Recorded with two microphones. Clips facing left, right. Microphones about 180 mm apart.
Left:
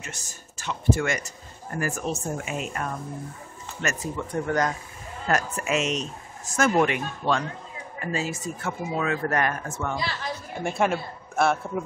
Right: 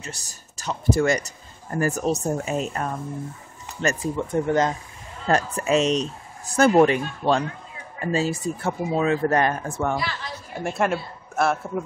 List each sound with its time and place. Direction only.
0.0 s speech: 35° right (ahead or behind)
10.5 s a man's voice: centre (ahead or behind)